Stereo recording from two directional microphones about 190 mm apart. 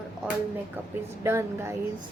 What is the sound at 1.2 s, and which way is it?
Music, 15° right (ahead or behind).